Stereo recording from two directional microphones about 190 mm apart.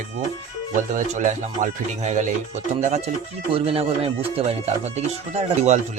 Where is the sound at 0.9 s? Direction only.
40° right (ahead or behind).